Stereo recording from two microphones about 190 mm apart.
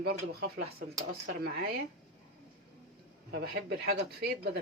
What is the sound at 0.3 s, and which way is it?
Speech, 60° right (ahead or behind).